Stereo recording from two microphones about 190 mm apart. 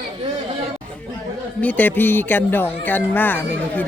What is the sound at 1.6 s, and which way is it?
Speech, 10° left (ahead or behind).